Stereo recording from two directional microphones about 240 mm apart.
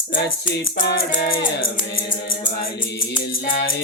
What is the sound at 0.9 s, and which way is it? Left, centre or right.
Music, left.